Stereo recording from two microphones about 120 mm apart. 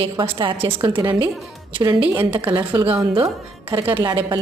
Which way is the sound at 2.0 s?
15° right (ahead or behind).